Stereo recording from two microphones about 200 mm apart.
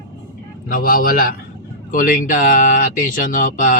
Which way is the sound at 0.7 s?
50° left (ahead or behind).